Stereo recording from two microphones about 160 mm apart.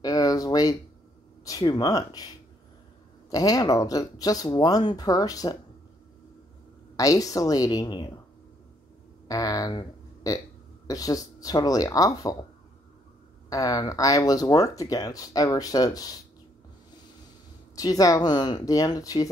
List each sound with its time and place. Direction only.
0.0 s a sound: 20° left (ahead or behind)
1.4 s speech: 25° left (ahead or behind)
3.3 s speech: 20° left (ahead or behind)
7.0 s speech: 20° left (ahead or behind)
9.3 s speech: 20° left (ahead or behind)
13.5 s speech: 20° left (ahead or behind)
17.7 s speech: 20° left (ahead or behind)